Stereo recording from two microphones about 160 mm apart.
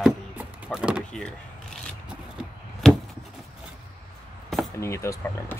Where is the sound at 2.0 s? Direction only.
Centre (ahead or behind).